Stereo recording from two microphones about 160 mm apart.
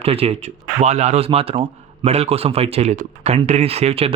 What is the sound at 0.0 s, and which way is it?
A man's voice, 40° right (ahead or behind).